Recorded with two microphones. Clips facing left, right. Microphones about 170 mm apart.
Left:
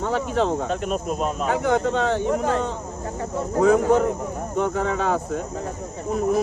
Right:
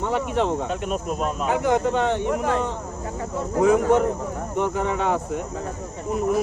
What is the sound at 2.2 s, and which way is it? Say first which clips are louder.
Speech: left 1 dB; 30° left (ahead or behind).